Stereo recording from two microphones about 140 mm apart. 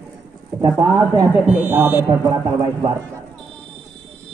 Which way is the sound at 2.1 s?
25° right (ahead or behind).